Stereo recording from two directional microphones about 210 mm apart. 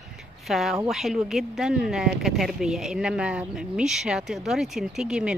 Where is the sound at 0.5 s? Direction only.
Centre (ahead or behind).